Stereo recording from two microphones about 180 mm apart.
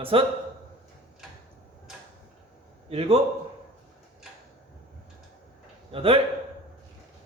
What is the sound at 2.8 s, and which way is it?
Speech, 30° right (ahead or behind).